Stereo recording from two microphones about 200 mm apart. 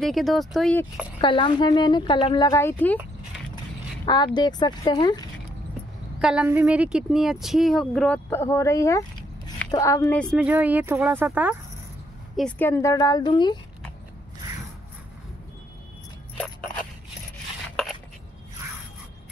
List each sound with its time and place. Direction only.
0.0 s speech: centre (ahead or behind)
1.2 s a woman's voice: 25° left (ahead or behind)
6.2 s speech: 5° right (ahead or behind); by 10.2 s 15° left (ahead or behind)
10.2 s speech: 5° right (ahead or behind)
12.4 s a woman's voice: 5° left (ahead or behind)